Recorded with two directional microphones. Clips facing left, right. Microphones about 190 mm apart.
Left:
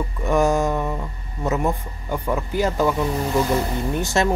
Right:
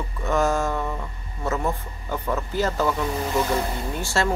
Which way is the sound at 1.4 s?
15° left (ahead or behind).